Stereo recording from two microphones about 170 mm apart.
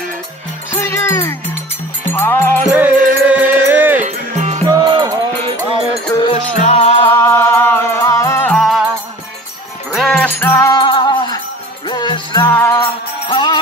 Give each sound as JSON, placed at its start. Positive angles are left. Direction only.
{"t": 0.7, "sound": "music", "side_deg": 15}
{"t": 2.7, "sound": "music", "side_deg": -10}
{"t": 4.0, "sound": "music", "side_deg": -45}
{"t": 4.6, "sound": "music", "side_deg": -25}
{"t": 6.5, "sound": "music", "side_deg": 40}
{"t": 7.1, "sound": "music", "side_deg": 15}
{"t": 8.5, "sound": "music", "side_deg": 0}
{"t": 9.9, "sound": "music", "side_deg": 0}
{"t": 10.4, "sound": "music", "side_deg": 15}
{"t": 10.8, "sound": "music", "side_deg": 30}
{"t": 12.4, "sound": "music", "side_deg": 15}
{"t": 13.3, "sound": "music", "side_deg": 25}